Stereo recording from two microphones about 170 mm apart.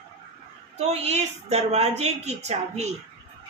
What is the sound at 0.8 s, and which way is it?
A woman's voice, 40° right (ahead or behind).